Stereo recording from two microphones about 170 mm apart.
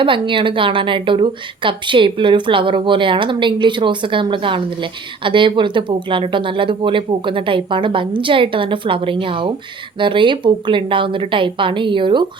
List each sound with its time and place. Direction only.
0.0 s a woman's voice: 30° right (ahead or behind)